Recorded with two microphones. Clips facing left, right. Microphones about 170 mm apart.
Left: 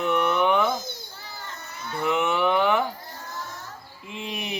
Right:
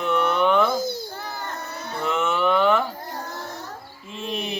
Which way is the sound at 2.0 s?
15° left (ahead or behind).